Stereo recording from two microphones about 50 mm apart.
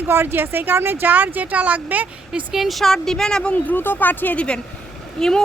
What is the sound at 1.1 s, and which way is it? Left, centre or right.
Speech, right.